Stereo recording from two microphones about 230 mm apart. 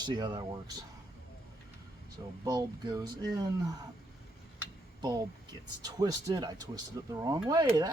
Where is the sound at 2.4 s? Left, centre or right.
Centre.